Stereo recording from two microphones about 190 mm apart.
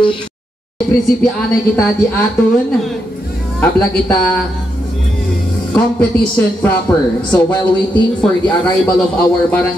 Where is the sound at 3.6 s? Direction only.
10° left (ahead or behind).